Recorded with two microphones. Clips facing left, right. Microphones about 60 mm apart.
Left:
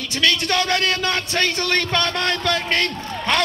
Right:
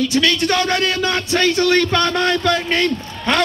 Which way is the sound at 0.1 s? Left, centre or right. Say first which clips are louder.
Right 4 dB; right.